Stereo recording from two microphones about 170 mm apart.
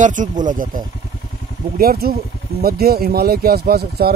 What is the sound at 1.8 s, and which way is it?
Speech, 60° right (ahead or behind).